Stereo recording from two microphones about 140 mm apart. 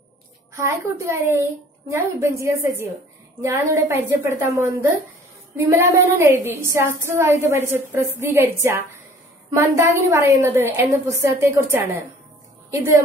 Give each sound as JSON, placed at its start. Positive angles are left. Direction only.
{"t": 0.6, "sound": "a woman's voice", "side_deg": -20}